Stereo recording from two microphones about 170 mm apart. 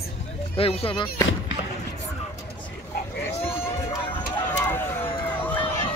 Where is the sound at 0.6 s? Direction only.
35° left (ahead or behind).